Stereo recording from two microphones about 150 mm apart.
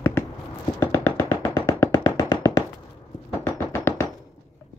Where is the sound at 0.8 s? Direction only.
25° left (ahead or behind).